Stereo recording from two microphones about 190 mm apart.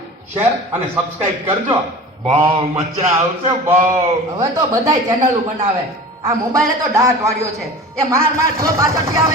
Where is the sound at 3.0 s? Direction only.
15° right (ahead or behind).